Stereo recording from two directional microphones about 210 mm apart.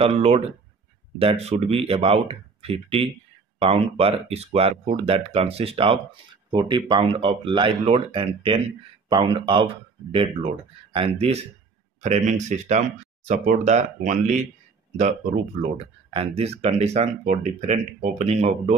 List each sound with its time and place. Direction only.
0.0 s speech: 30° right (ahead or behind)
15.6 s speech: 30° right (ahead or behind)